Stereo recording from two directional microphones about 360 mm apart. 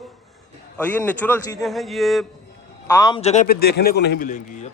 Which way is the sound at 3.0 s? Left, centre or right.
Centre.